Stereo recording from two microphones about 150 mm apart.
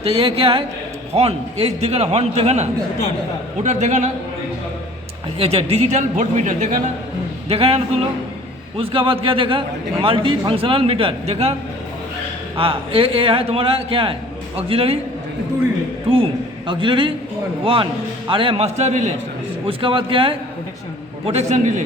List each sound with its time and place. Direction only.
0.0 s a man's voice: 40° right (ahead or behind)
5.4 s a man's voice: 40° right (ahead or behind)
7.4 s a man's voice: 40° right (ahead or behind)
8.8 s a man's voice: 35° right (ahead or behind)
12.5 s a man's voice: 35° right (ahead or behind)
16.0 s a man's voice: 35° right (ahead or behind)
19.6 s a man's voice: 35° right (ahead or behind)
21.2 s a man's voice: 50° right (ahead or behind)